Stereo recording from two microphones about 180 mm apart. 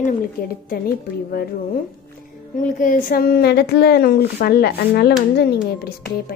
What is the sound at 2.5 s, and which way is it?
A woman's voice, 50° left (ahead or behind).